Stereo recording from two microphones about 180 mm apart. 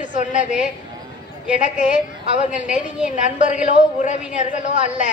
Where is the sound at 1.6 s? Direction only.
45° left (ahead or behind).